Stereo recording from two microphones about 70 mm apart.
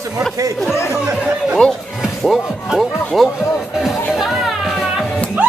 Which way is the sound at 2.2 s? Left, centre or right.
Centre.